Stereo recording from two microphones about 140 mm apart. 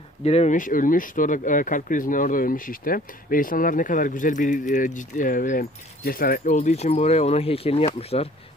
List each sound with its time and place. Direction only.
0.2 s speech: 50° left (ahead or behind); by 6.4 s 90° left
6.4 s speech: 55° left (ahead or behind)